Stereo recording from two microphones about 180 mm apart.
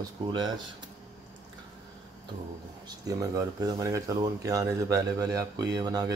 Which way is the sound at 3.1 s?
20° right (ahead or behind).